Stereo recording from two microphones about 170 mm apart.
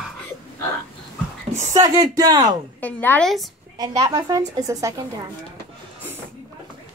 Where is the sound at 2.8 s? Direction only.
10° left (ahead or behind).